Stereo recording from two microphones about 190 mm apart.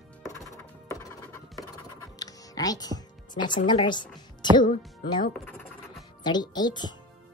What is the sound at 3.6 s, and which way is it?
Speech, 25° left (ahead or behind).